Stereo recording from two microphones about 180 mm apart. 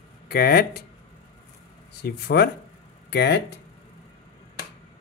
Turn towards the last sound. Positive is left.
turn(degrees=65)  # may be behind; listen again after turning